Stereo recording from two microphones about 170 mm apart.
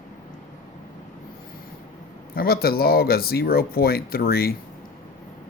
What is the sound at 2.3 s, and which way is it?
Speech, 65° left (ahead or behind).